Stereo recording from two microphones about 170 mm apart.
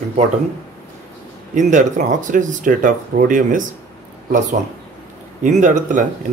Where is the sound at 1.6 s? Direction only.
50° right (ahead or behind).